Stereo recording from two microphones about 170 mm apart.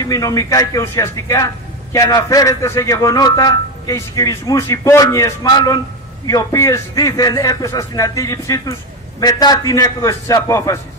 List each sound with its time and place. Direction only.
0.0 s speech: 20° left (ahead or behind)